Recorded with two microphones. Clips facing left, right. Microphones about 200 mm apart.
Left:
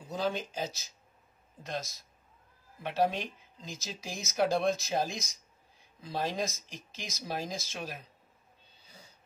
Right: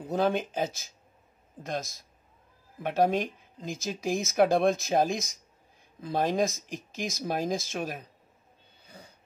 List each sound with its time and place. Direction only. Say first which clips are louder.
0.0 s speech: right 6 dB; 60° right (ahead or behind)
8.8 s wheeze: right 7 dB; 55° right (ahead or behind)